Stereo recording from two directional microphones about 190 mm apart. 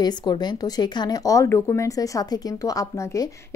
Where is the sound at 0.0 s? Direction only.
20° left (ahead or behind).